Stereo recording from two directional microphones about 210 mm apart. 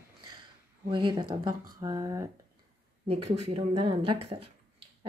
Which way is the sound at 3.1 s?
25° right (ahead or behind).